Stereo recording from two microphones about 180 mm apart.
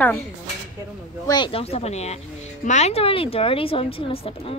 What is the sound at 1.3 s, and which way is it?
Speech, 25° left (ahead or behind).